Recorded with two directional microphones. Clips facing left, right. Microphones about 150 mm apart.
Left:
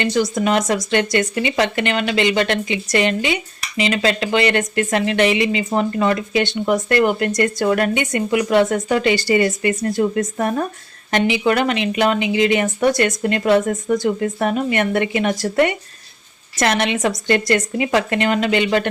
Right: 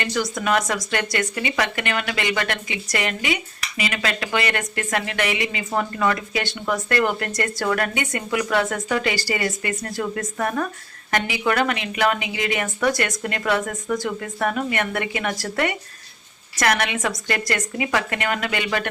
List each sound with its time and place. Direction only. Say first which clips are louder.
0.0 s speech: left 6 dB; 25° left (ahead or behind)